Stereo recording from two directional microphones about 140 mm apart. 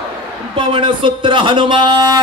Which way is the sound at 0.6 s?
35° right (ahead or behind).